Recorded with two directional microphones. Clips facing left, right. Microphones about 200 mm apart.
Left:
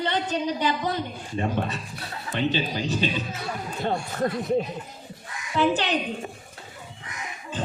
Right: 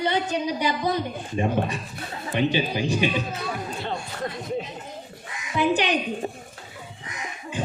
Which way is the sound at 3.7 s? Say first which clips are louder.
Left 4 dB; 45° left (ahead or behind).